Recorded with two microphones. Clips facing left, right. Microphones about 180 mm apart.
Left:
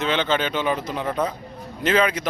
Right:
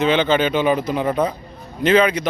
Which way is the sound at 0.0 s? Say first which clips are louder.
Right 6 dB; 5° right (ahead or behind).